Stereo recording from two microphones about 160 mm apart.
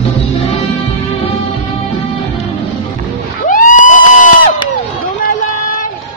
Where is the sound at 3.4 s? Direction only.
55° left (ahead or behind).